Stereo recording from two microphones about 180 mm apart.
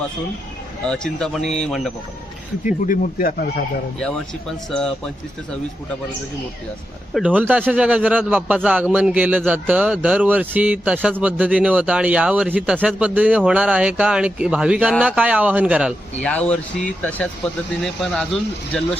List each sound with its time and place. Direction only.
0.9 s speech: 5° left (ahead or behind)
2.8 s speech: 50° left (ahead or behind)
4.0 s speech: 5° left (ahead or behind)
7.1 s a man's voice: 5° right (ahead or behind)
16.2 s speech: 5° left (ahead or behind)
18.7 s speech: 5° left (ahead or behind)